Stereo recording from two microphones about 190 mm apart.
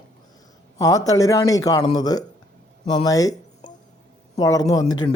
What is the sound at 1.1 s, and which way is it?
Speech, 15° left (ahead or behind).